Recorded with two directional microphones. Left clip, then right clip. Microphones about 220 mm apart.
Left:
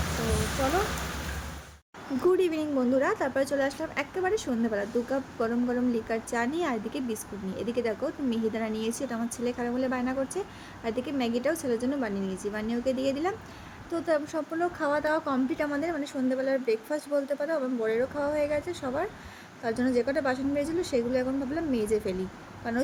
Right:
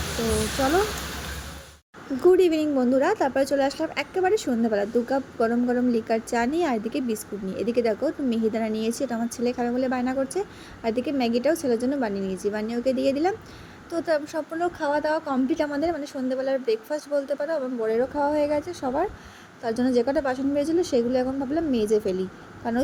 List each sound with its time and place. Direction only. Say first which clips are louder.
2.2 s a woman's voice: right 7 dB; 15° right (ahead or behind)